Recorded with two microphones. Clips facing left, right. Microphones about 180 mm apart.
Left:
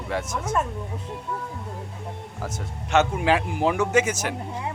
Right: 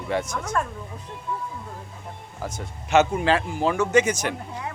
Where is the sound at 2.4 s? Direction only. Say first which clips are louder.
Right 1 dB; centre (ahead or behind).